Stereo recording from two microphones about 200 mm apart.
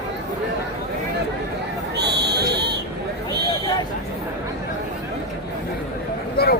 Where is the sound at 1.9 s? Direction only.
55° right (ahead or behind).